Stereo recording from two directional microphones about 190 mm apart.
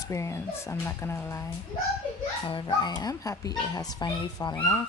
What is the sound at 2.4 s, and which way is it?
Speech, 25° left (ahead or behind).